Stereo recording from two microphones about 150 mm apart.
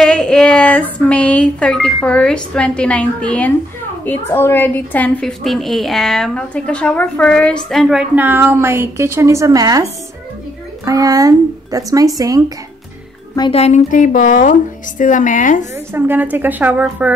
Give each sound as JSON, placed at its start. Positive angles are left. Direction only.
{"t": 0.0, "sound": "a woman's voice", "side_deg": 5}
{"t": 10.9, "sound": "speech", "side_deg": -25}
{"t": 13.4, "sound": "a woman's voice", "side_deg": 40}
{"t": 15.9, "sound": "a woman's voice", "side_deg": -10}